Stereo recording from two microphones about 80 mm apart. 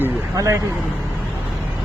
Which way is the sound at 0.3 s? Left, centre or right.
Right.